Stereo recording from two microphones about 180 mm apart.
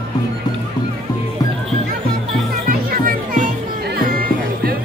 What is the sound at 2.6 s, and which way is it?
Music, 50° right (ahead or behind).